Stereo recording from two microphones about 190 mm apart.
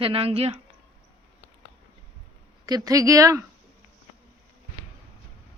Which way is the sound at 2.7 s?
20° right (ahead or behind).